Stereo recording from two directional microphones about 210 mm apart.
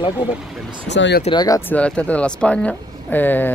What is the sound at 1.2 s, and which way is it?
Speech, 20° left (ahead or behind).